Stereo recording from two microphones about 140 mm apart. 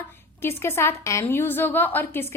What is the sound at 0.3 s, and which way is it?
A woman's voice, 15° left (ahead or behind).